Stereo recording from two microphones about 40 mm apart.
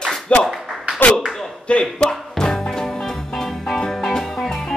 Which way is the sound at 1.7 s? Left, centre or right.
Left.